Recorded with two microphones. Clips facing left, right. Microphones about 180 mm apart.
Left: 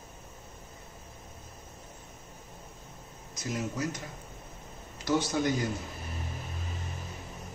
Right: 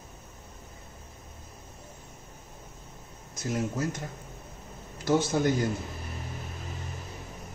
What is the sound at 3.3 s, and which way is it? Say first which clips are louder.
Speech: right 3 dB; 50° right (ahead or behind).